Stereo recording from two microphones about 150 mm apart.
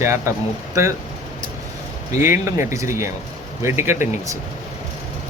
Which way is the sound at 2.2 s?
20° right (ahead or behind).